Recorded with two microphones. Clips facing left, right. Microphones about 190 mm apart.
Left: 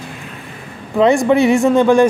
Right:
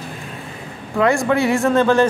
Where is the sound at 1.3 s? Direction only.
20° left (ahead or behind).